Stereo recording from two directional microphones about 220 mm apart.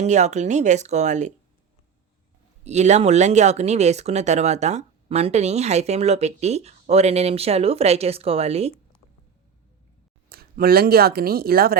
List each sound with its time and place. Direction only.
0.0 s speech: 30° right (ahead or behind)
2.6 s speech: 30° right (ahead or behind)
10.2 s speech: 45° right (ahead or behind)